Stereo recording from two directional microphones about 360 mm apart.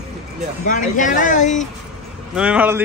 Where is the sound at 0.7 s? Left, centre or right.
Left.